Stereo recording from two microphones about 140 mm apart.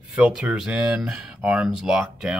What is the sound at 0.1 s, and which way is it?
Speech, 5° right (ahead or behind).